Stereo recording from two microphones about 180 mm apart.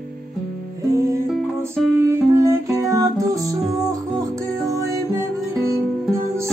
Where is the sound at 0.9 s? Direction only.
15° right (ahead or behind).